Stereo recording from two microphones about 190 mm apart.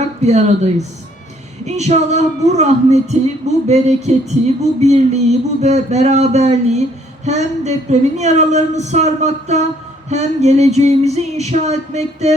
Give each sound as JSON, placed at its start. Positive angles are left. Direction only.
{"t": 0.0, "sound": "speech", "side_deg": -35}